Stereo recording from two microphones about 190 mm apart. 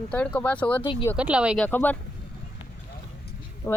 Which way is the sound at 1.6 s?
10° left (ahead or behind).